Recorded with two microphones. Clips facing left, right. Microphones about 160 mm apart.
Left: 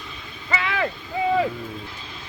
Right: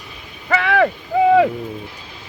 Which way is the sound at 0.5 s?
65° right (ahead or behind).